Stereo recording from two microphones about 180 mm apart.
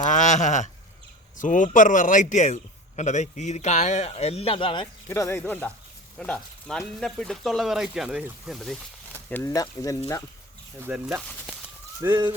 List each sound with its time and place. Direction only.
0.1 s a sound: 45° left (ahead or behind)
1.4 s a man's voice: 45° left (ahead or behind); by 4.9 s 30° left (ahead or behind)
5.0 s speech: 15° left (ahead or behind); by 8.8 s centre (ahead or behind)
9.3 s speech: 15° left (ahead or behind)
10.8 s speech: 10° right (ahead or behind)
12.0 s speech: 25° right (ahead or behind)